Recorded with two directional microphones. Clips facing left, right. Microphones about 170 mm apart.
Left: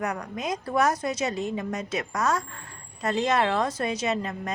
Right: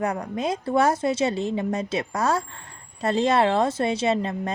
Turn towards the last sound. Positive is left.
turn(degrees=-30)  # may be behind; listen again after turning